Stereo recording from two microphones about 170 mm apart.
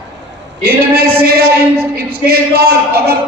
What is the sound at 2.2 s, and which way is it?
Speech, 65° right (ahead or behind).